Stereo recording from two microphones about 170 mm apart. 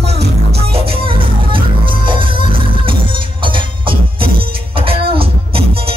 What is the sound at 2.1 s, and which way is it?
Music, 30° right (ahead or behind).